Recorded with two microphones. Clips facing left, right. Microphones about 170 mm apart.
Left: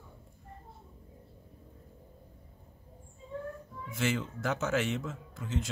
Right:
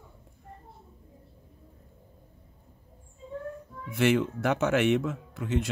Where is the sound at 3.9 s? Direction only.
65° right (ahead or behind).